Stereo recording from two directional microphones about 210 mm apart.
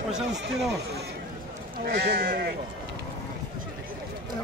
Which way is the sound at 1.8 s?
50° right (ahead or behind).